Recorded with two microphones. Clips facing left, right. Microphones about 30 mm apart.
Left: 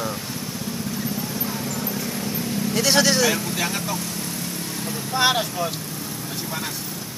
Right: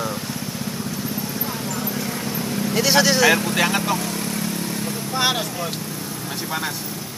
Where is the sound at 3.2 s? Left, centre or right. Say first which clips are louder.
Right 5 dB; right.